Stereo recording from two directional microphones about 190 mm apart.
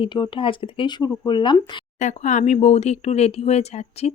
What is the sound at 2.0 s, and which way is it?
A woman's voice, 40° left (ahead or behind).